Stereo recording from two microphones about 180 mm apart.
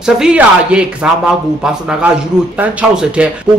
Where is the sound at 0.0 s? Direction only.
5° right (ahead or behind).